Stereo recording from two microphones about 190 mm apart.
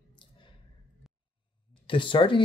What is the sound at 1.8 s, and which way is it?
Speech, 25° left (ahead or behind).